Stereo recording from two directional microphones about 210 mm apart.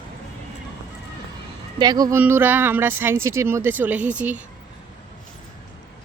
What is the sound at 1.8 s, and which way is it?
Speech, 20° right (ahead or behind).